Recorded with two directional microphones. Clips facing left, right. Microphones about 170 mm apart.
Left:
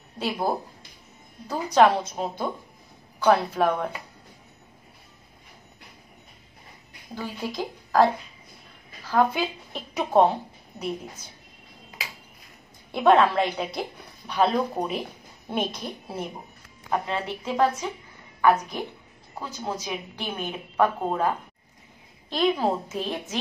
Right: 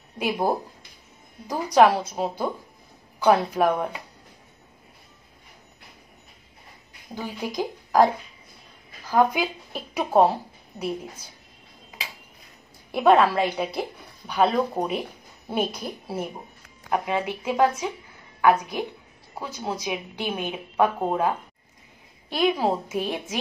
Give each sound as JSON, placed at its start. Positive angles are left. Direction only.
{"t": 1.5, "sound": "a woman's voice", "side_deg": -10}
{"t": 7.2, "sound": "a woman's voice", "side_deg": -15}
{"t": 12.9, "sound": "a woman's voice", "side_deg": -5}
{"t": 22.3, "sound": "a woman's voice", "side_deg": -10}